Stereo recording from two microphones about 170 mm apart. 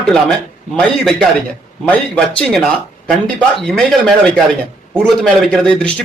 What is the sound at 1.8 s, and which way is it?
Speech, 5° left (ahead or behind).